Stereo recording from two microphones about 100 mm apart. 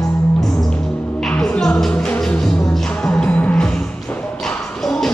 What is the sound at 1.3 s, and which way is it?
Music, 10° left (ahead or behind).